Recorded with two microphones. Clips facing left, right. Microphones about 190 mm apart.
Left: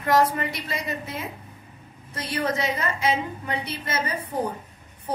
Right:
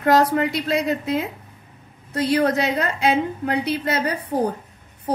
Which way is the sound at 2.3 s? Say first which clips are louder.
Right 6 dB; 75° right (ahead or behind).